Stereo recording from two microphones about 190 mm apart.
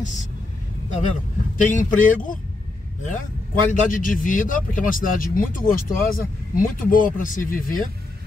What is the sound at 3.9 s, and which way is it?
Speech, 45° left (ahead or behind).